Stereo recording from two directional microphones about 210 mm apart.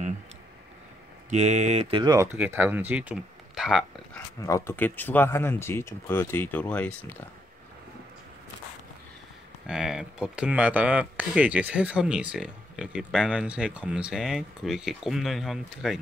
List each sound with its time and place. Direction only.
1.3 s speech: 30° right (ahead or behind)
2.3 s speech: 10° right (ahead or behind)
4.4 s speech: 15° left (ahead or behind)
9.7 s speech: 5° right (ahead or behind)